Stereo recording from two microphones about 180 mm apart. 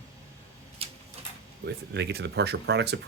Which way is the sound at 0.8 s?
35° right (ahead or behind).